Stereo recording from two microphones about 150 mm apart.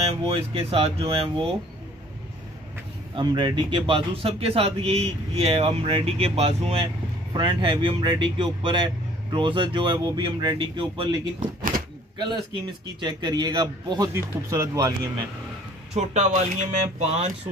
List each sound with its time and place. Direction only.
0.0 s speech: 40° right (ahead or behind)
3.2 s speech: 30° right (ahead or behind)
7.3 s speech: 35° right (ahead or behind)
13.0 s speech: 30° right (ahead or behind)
15.9 s speech: 50° right (ahead or behind)